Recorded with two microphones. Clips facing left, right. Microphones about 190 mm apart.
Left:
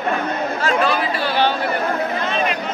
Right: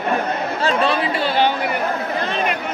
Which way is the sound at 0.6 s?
30° right (ahead or behind).